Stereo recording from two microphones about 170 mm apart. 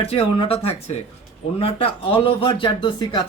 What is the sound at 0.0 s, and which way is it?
A man's voice, 35° left (ahead or behind).